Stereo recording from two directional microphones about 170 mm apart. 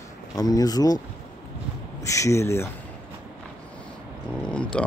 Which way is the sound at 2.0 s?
20° left (ahead or behind).